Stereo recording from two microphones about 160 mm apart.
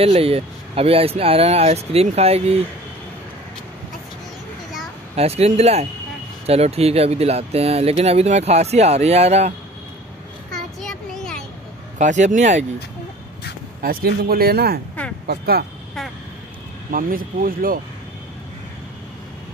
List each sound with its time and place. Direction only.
0.0 s speech: 40° right (ahead or behind)
5.1 s speech: 40° right (ahead or behind)
10.5 s child singing: 5° left (ahead or behind)
12.0 s speech: 50° right (ahead or behind)
13.7 s a man's voice: 65° right (ahead or behind)
16.9 s speech: 60° right (ahead or behind)